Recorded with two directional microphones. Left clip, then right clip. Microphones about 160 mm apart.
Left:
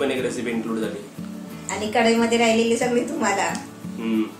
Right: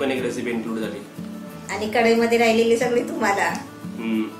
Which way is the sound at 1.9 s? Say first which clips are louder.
Right 1 dB; 20° right (ahead or behind).